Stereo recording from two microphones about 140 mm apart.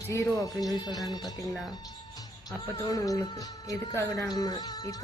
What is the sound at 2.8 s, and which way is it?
A woman's voice, 25° left (ahead or behind).